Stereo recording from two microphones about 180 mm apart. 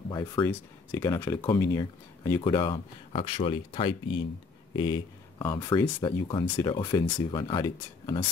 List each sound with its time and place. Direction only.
0.1 s speech: 20° left (ahead or behind)
5.4 s speech: 15° left (ahead or behind)